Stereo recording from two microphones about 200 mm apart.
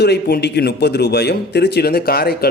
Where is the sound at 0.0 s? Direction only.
55° left (ahead or behind).